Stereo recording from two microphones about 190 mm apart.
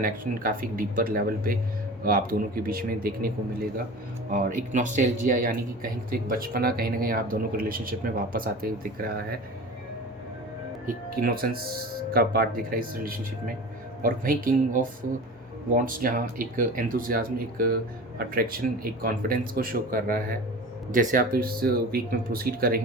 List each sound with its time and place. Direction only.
0.0 s speech: 45° right (ahead or behind)
10.8 s speech: 50° right (ahead or behind)